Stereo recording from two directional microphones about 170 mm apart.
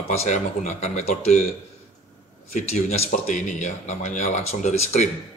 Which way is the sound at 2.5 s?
40° left (ahead or behind).